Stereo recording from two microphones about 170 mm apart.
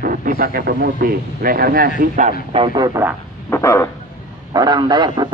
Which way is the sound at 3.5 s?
15° left (ahead or behind).